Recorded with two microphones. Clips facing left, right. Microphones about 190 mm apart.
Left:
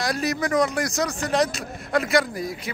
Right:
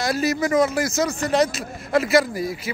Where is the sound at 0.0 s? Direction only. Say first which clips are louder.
Right 3 dB; centre (ahead or behind).